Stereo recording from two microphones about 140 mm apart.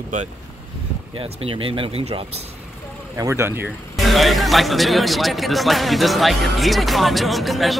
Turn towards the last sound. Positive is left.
turn(degrees=0)  # may be behind; listen again after turning